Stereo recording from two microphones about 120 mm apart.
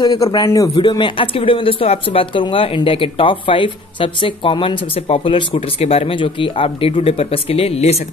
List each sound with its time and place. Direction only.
0.0 s a man's voice: 30° left (ahead or behind)
0.8 s speech: 40° left (ahead or behind); by 8.0 s 60° left (ahead or behind)